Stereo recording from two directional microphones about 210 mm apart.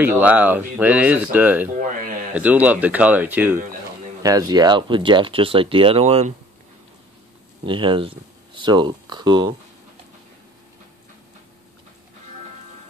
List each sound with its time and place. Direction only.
0.0 s speech: 10° right (ahead or behind); by 6.3 s 30° right (ahead or behind)
7.6 s speech: 25° right (ahead or behind)